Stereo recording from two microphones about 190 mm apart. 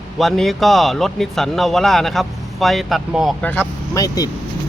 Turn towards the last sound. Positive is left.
turn(degrees=20)  # may be behind; listen again after turning